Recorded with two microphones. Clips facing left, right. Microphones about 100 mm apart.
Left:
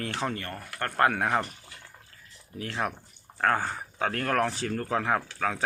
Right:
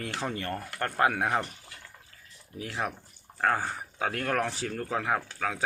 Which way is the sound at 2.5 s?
5° right (ahead or behind).